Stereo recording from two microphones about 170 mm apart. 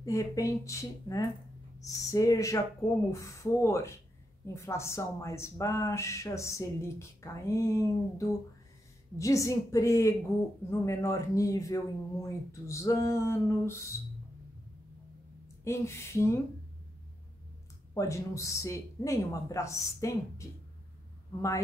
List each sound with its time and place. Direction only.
0.0 s speech: 20° left (ahead or behind)
15.6 s speech: 15° left (ahead or behind)
17.9 s speech: 20° left (ahead or behind)